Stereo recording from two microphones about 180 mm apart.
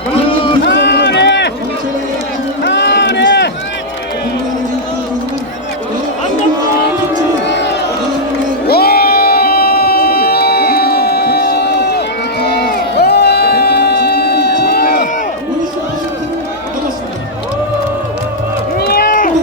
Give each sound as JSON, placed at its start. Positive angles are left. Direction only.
{"t": 0.3, "sound": "a sound", "side_deg": 30}
{"t": 0.6, "sound": "a sound", "side_deg": 70}
{"t": 2.6, "sound": "run", "side_deg": 75}
{"t": 7.4, "sound": "crowd", "side_deg": 70}
{"t": 8.6, "sound": "crowd", "side_deg": 60}
{"t": 18.8, "sound": "run", "side_deg": 60}